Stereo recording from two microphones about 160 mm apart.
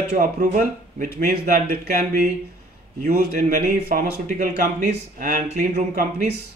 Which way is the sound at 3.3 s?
60° right (ahead or behind).